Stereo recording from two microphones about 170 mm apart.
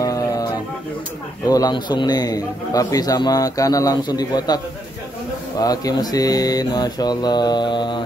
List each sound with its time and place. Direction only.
0.0 s music: 20° left (ahead or behind)
1.4 s a man's voice: 20° left (ahead or behind)
5.6 s a man's voice: 20° left (ahead or behind)